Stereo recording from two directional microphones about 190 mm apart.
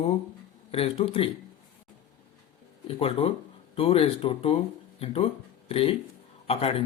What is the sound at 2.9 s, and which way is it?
Speech, 30° left (ahead or behind).